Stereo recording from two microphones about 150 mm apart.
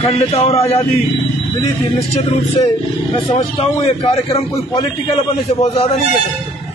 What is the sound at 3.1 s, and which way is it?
Speech, 35° left (ahead or behind).